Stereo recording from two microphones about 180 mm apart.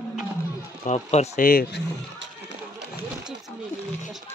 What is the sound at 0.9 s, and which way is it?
Speech, 40° left (ahead or behind).